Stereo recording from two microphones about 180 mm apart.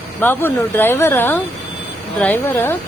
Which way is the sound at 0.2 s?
10° left (ahead or behind).